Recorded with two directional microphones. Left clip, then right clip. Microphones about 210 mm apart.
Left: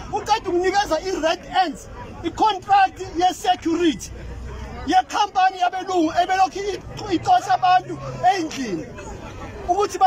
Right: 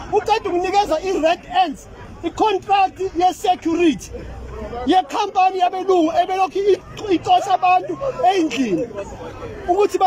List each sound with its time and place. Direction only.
0.1 s a man's voice: 15° right (ahead or behind)